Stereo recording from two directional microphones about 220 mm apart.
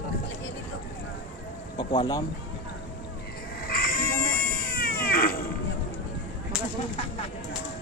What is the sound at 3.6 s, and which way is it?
Cat, 40° left (ahead or behind).